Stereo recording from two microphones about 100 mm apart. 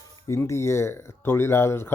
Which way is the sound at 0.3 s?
30° left (ahead or behind).